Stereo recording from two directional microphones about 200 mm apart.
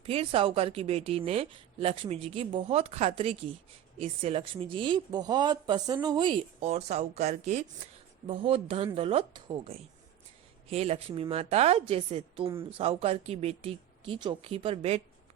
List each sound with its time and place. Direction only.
0.0 s a woman's voice: 30° right (ahead or behind)